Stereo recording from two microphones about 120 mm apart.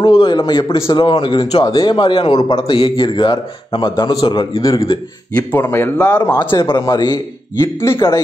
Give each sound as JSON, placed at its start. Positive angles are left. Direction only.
{"t": 0.0, "sound": "a man's voice", "side_deg": 40}
{"t": 5.5, "sound": "speech", "side_deg": 15}
{"t": 6.0, "sound": "a man's voice", "side_deg": 30}
{"t": 7.6, "sound": "a man's voice", "side_deg": 25}